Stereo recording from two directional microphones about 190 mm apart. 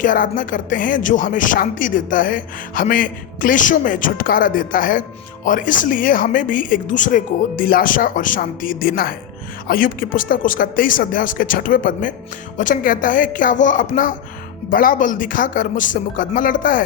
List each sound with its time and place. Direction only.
0.0 s speech: 45° left (ahead or behind)